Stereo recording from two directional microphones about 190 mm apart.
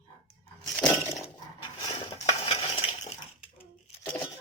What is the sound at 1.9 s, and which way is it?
Dishes, 30° left (ahead or behind).